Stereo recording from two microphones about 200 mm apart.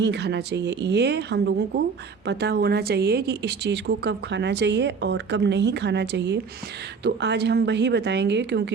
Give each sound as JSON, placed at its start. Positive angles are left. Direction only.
{"t": 0.0, "sound": "a woman's voice", "side_deg": -60}